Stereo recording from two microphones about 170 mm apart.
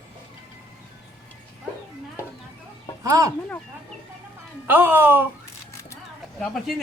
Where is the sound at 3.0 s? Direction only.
20° right (ahead or behind).